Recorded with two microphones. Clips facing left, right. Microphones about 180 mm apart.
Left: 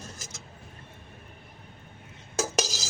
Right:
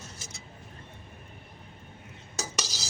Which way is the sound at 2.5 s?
90° left.